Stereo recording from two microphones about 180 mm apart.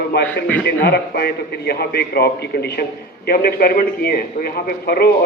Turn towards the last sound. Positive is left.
turn(degrees=60)  # may be behind; listen again after turning